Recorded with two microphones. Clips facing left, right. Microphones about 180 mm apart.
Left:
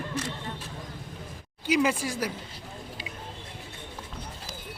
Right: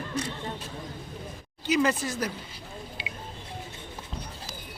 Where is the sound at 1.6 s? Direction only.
10° left (ahead or behind).